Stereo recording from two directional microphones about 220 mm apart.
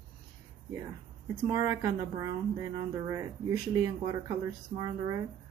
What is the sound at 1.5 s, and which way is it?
Speech, 15° right (ahead or behind).